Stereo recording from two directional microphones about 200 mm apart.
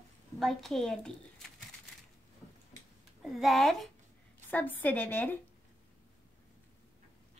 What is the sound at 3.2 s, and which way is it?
A woman's voice, centre (ahead or behind).